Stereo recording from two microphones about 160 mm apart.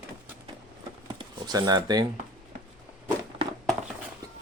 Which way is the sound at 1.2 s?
25° right (ahead or behind).